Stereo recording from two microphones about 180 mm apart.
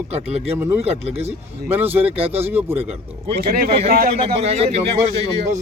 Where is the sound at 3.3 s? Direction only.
60° right (ahead or behind).